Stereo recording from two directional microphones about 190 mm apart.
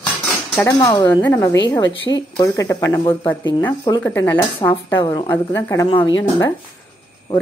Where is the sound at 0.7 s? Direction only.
20° left (ahead or behind).